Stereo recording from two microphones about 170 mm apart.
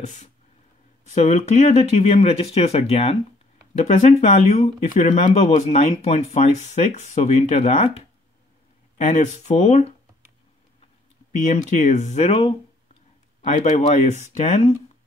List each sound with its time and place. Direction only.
1.0 s speech: 40° left (ahead or behind)
11.3 s speech: 45° left (ahead or behind)